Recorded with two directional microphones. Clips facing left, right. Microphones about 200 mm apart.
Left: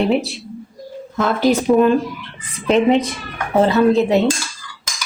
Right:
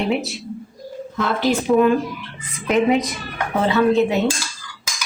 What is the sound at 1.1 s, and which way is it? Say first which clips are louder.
Speech: left 4 dB; 45° left (ahead or behind).